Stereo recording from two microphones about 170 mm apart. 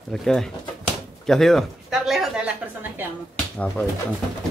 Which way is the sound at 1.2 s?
Centre (ahead or behind).